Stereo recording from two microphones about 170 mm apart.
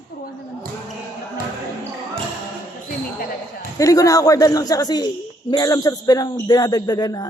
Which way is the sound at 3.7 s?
20° left (ahead or behind).